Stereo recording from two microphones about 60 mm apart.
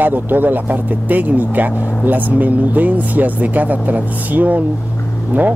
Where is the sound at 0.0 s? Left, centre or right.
Right.